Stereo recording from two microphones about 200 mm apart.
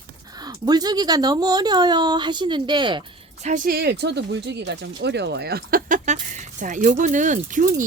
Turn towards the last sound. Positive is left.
turn(degrees=-40)  # may be behind; listen again after turning